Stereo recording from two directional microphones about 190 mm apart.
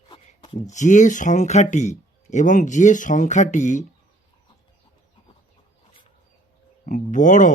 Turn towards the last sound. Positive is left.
turn(degrees=40)  # may be behind; listen again after turning